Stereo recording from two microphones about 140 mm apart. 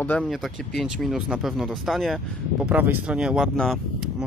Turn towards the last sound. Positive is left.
turn(degrees=0)  # may be behind; listen again after turning